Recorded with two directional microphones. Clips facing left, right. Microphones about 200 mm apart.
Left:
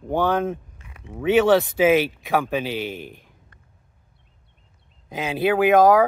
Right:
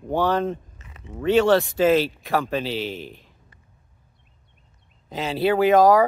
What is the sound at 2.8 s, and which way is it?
Speech, 55° left (ahead or behind).